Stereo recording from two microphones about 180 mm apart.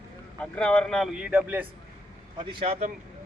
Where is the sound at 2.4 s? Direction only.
30° right (ahead or behind).